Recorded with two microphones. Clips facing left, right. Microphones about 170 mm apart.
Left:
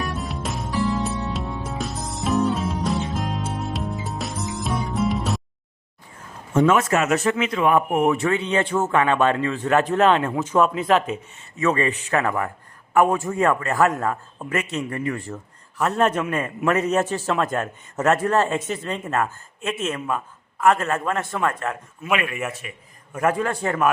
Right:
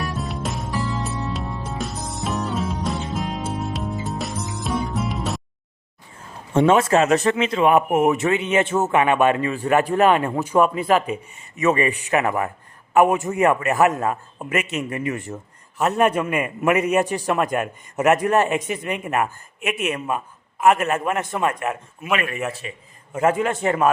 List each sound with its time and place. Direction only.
0.0 s music: centre (ahead or behind)
6.5 s a man's voice: 30° right (ahead or behind); by 11.2 s 5° right (ahead or behind)
11.5 s a man's voice: 20° right (ahead or behind)
22.6 s a man's voice: 25° right (ahead or behind)